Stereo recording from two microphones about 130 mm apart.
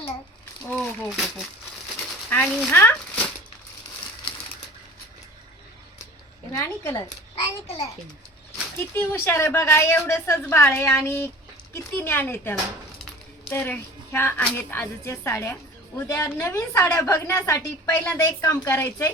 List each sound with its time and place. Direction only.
0.7 s speech: 5° left (ahead or behind)
6.5 s a child's voice: 25° left (ahead or behind)
8.8 s a woman's voice: 15° left (ahead or behind)